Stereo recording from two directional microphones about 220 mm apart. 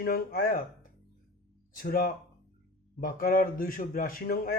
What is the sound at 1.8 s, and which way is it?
Speech, 40° left (ahead or behind).